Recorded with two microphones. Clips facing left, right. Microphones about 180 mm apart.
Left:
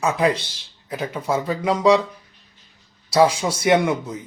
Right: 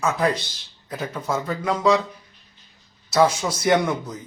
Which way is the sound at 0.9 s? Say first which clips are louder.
Left 3 dB; 10° left (ahead or behind).